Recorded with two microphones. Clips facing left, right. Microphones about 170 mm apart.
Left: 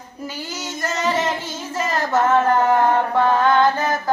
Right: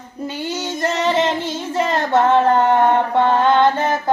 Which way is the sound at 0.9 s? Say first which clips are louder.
Right 3 dB; 30° right (ahead or behind).